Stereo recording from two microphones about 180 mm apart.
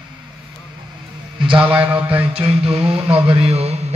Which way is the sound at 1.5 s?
10° right (ahead or behind).